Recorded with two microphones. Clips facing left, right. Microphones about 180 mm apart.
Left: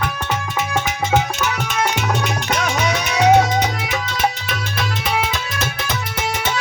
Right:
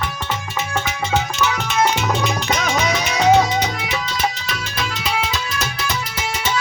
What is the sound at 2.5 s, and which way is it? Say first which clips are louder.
Music: left 1 dB; 60° left (ahead or behind).